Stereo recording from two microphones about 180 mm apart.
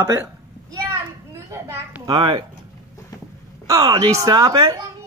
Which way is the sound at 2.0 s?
25° right (ahead or behind).